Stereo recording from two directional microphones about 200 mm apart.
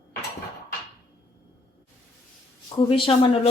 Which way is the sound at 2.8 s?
25° left (ahead or behind).